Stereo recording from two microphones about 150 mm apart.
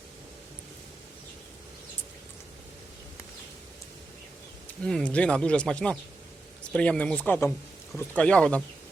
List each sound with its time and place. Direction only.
4.8 s speech: 5° left (ahead or behind)